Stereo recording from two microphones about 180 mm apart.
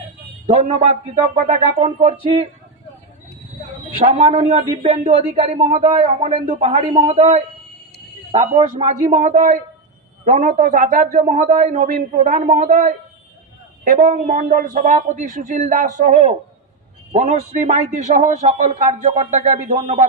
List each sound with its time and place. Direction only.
0.5 s speech: 40° right (ahead or behind)
4.0 s a man's voice: 40° right (ahead or behind)
6.0 s a man's voice: 30° right (ahead or behind)